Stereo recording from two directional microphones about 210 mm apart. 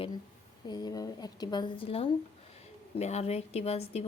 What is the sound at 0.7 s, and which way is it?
A woman's voice, 20° left (ahead or behind).